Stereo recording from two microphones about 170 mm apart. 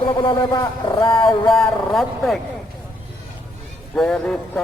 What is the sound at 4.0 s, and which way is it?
Speech, 5° left (ahead or behind).